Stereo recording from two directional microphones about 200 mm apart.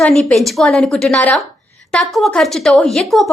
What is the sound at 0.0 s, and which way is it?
A woman's voice, 5° left (ahead or behind).